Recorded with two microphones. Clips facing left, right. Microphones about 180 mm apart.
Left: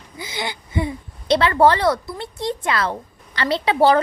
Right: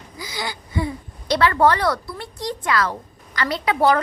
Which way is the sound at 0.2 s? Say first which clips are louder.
Left 2 dB; 25° left (ahead or behind).